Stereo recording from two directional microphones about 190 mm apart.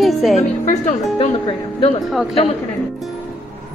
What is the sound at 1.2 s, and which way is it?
Speech, 30° left (ahead or behind).